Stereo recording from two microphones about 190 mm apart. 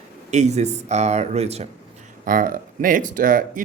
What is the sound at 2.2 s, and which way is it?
Speech, 45° right (ahead or behind).